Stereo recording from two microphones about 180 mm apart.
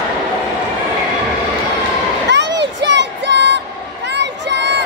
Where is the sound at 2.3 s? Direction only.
75° right (ahead or behind).